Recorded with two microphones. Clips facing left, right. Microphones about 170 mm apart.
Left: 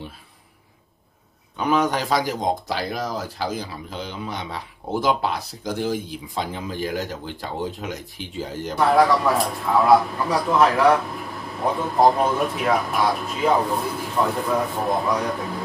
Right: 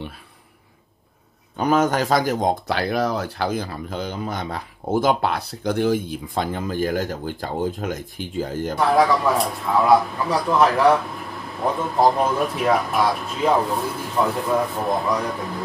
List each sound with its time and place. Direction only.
1.6 s speech: 45° right (ahead or behind); by 3.4 s 65° right (ahead or behind)
3.5 s speech: 50° right (ahead or behind)
6.3 s speech: 50° right (ahead or behind)
8.7 s speech: centre (ahead or behind)